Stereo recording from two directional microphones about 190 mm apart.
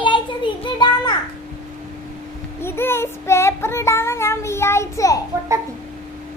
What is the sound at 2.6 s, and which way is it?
Child singing, 10° left (ahead or behind).